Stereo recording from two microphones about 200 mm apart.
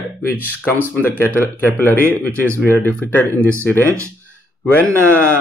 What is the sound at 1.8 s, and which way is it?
A man's voice, 10° left (ahead or behind).